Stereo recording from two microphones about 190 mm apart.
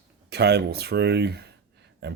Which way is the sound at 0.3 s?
60° right (ahead or behind).